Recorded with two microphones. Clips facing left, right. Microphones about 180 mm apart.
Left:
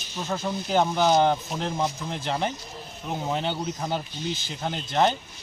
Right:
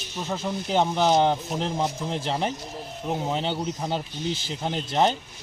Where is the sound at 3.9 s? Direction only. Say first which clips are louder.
Right 1 dB; 30° right (ahead or behind).